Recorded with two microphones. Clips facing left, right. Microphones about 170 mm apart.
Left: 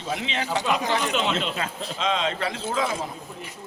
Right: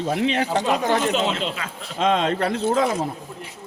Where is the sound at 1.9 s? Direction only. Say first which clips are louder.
Right 6 dB; 50° right (ahead or behind).